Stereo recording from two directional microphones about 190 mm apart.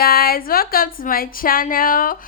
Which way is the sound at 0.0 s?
50° left (ahead or behind).